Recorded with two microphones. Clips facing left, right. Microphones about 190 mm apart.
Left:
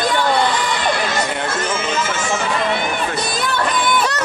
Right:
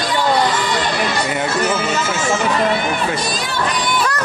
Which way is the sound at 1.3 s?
5° right (ahead or behind).